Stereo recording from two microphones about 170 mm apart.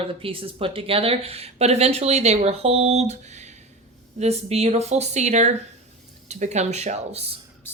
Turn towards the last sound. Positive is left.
turn(degrees=-40)  # may be behind; listen again after turning